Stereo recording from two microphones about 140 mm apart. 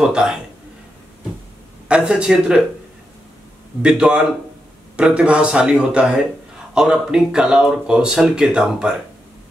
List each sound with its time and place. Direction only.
0.0 s speech: 5° right (ahead or behind)
1.9 s speech: 5° right (ahead or behind)
3.8 s speech: 5° right (ahead or behind)